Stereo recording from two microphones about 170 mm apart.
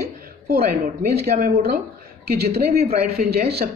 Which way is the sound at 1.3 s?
55° right (ahead or behind).